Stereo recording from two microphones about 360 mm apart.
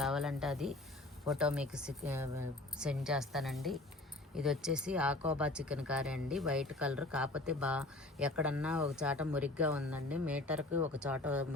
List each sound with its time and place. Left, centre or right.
0.0 s speech: centre